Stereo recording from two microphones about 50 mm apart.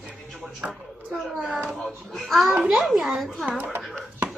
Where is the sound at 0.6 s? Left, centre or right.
Right.